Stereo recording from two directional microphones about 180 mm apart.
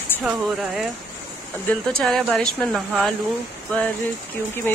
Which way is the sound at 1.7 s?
5° left (ahead or behind).